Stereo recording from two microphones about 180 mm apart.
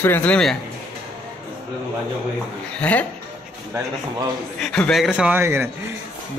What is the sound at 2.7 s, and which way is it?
Speech, 10° left (ahead or behind).